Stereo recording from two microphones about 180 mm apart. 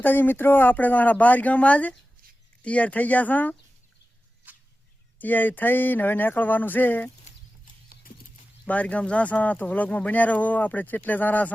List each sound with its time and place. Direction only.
0.0 s speech: 10° left (ahead or behind)
4.4 s a sound: 10° right (ahead or behind)
5.2 s speech: 10° left (ahead or behind)
7.3 s horse: 50° left (ahead or behind)
8.6 s speech: 10° left (ahead or behind)